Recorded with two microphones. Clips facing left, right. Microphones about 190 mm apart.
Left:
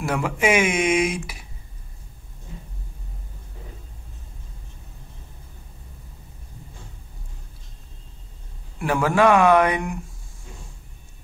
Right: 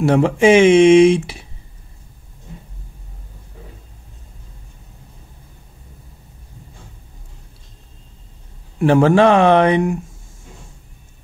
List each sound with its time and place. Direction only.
0.0 s speech: 30° right (ahead or behind)
8.7 s speech: 30° right (ahead or behind)